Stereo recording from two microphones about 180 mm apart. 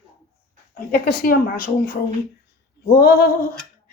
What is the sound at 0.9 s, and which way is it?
Speech, 55° left (ahead or behind).